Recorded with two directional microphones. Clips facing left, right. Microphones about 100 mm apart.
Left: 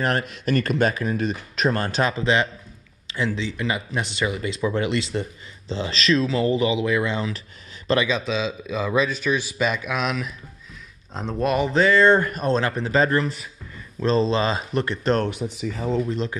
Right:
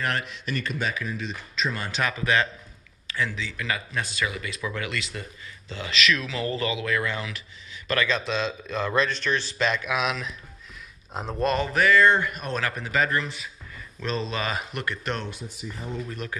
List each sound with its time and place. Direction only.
0.0 s speech: 40° left (ahead or behind)
2.0 s speech: 25° left (ahead or behind)
8.1 s a man's voice: centre (ahead or behind)
11.6 s speech: 25° left (ahead or behind)
12.2 s speech: 40° left (ahead or behind)
15.2 s speech: 75° left (ahead or behind); by 16.0 s 90° left
16.1 s speech: 20° left (ahead or behind)